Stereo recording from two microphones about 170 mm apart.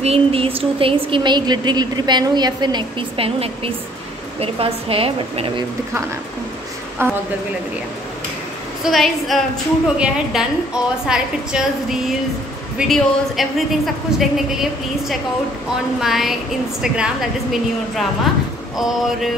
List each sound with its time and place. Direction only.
0.0 s a woman's voice: 35° right (ahead or behind)
7.0 s a woman's voice: 15° right (ahead or behind)
8.8 s a woman's voice: centre (ahead or behind)